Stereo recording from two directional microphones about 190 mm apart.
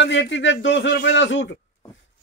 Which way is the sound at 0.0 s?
70° left (ahead or behind).